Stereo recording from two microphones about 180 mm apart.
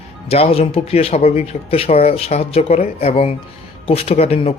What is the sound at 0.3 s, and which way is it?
Speech, 35° left (ahead or behind).